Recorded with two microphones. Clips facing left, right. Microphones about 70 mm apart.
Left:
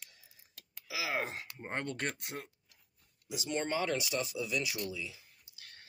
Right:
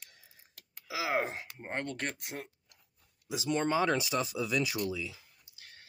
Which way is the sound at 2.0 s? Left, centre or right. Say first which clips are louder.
Even; centre.